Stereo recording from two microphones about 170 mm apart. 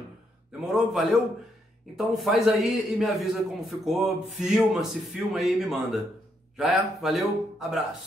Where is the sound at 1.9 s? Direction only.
Centre (ahead or behind).